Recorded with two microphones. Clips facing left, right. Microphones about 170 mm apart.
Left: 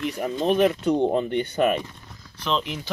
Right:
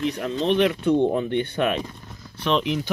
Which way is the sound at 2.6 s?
15° right (ahead or behind).